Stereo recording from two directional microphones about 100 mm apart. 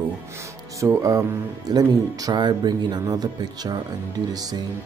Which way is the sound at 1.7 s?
40° right (ahead or behind).